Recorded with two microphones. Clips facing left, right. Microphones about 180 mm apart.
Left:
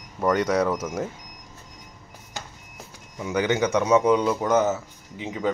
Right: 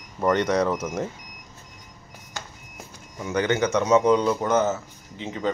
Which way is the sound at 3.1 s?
10° left (ahead or behind).